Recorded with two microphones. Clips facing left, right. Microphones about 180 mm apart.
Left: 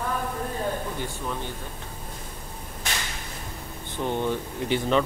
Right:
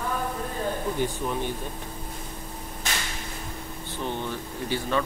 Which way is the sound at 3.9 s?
15° left (ahead or behind).